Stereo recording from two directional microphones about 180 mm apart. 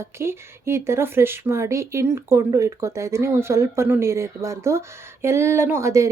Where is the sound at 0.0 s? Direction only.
15° right (ahead or behind).